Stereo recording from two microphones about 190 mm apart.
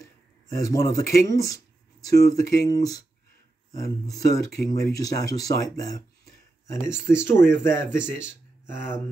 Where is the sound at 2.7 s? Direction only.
20° left (ahead or behind).